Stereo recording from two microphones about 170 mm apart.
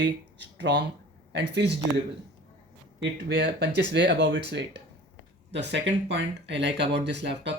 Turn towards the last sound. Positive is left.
turn(degrees=-90)